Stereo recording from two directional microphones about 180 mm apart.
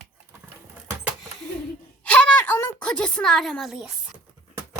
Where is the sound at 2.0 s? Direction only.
5° left (ahead or behind).